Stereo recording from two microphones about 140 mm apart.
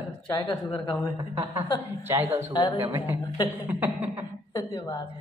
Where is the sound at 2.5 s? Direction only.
30° left (ahead or behind).